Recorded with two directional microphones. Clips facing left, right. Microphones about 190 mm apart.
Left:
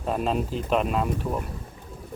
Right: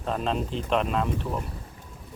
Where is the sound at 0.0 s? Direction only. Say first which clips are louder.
Left 2 dB; 10° left (ahead or behind).